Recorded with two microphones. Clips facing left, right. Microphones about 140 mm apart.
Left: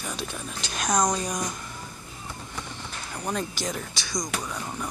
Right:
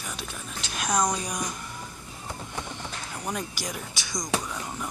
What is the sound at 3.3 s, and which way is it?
Speech, 15° right (ahead or behind).